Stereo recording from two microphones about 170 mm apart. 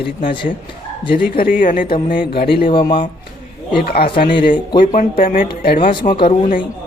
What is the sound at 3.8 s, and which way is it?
Speech, 60° left (ahead or behind).